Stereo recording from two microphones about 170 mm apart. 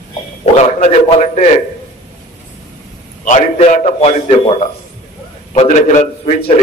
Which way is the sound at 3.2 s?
45° left (ahead or behind).